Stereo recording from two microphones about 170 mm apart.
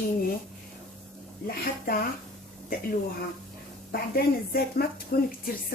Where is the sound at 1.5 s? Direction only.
65° left (ahead or behind).